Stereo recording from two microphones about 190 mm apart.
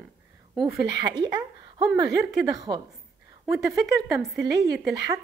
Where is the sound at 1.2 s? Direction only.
20° right (ahead or behind).